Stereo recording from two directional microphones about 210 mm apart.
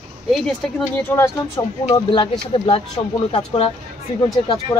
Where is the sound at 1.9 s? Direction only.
25° left (ahead or behind).